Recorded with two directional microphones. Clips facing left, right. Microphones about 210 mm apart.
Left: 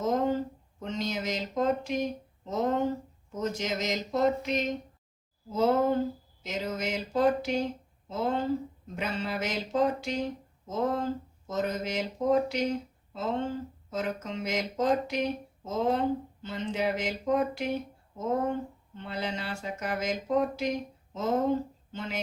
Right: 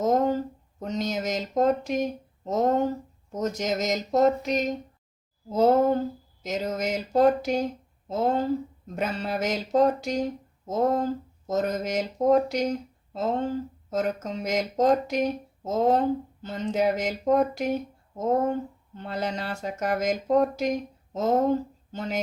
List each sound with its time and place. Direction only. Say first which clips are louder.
0.0 s speech: right 4 dB; 40° right (ahead or behind)